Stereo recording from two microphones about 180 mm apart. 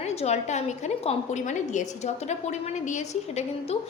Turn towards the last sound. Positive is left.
turn(degrees=35)  # may be behind; listen again after turning